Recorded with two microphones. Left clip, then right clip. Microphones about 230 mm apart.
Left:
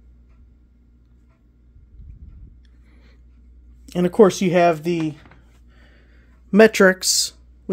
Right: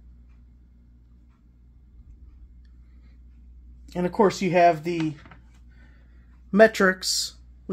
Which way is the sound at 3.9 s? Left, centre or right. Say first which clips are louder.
Left 7 dB; left.